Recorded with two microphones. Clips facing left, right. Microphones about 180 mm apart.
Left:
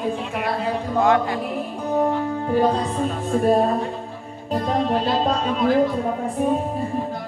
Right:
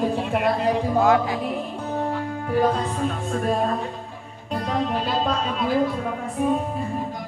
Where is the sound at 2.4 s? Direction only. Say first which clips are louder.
Left 1 dB; 30° left (ahead or behind).